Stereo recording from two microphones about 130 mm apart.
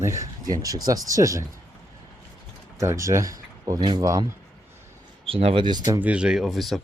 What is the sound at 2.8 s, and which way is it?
Speech, 25° right (ahead or behind).